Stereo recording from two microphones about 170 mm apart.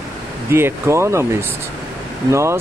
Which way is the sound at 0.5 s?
15° right (ahead or behind).